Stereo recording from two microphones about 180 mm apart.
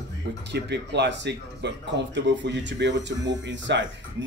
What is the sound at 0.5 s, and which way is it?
Speech, 70° right (ahead or behind).